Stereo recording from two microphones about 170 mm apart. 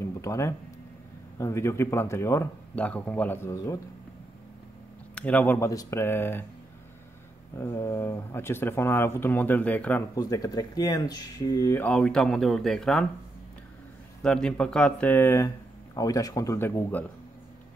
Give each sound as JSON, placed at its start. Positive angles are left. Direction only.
{"t": 0.0, "sound": "a sound", "side_deg": 15}
{"t": 1.4, "sound": "speech", "side_deg": 15}
{"t": 5.1, "sound": "speech", "side_deg": 10}
{"t": 7.5, "sound": "speech", "side_deg": 15}
{"t": 10.1, "sound": "speech", "side_deg": 20}
{"t": 11.8, "sound": "speech", "side_deg": 5}
{"t": 14.2, "sound": "speech", "side_deg": 5}